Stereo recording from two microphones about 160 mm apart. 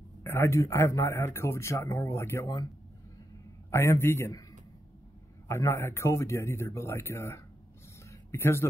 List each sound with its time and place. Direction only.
0.2 s speech: 15° left (ahead or behind)
3.7 s speech: 15° left (ahead or behind)
8.1 s a sound: 15° left (ahead or behind)